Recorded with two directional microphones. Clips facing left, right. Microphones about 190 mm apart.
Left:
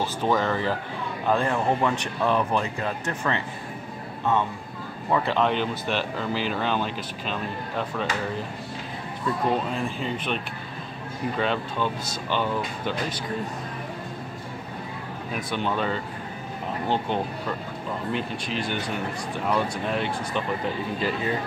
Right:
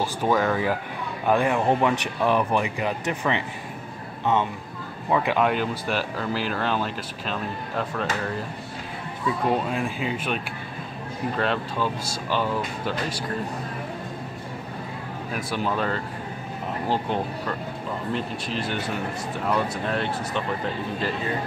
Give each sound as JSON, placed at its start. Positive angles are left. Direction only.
{"t": 0.0, "sound": "speech", "side_deg": -10}
{"t": 5.1, "sound": "speech", "side_deg": -10}
{"t": 9.8, "sound": "speech", "side_deg": -10}
{"t": 15.3, "sound": "speech", "side_deg": -5}